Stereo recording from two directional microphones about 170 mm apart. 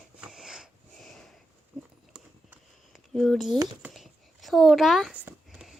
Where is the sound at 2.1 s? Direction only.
5° right (ahead or behind).